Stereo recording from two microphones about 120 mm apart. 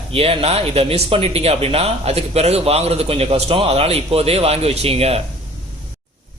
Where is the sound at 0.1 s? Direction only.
55° right (ahead or behind).